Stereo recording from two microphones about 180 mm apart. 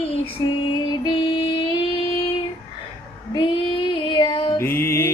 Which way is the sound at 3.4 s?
25° left (ahead or behind).